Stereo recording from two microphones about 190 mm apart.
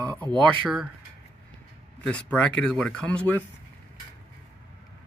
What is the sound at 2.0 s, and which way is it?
Speech, 5° left (ahead or behind).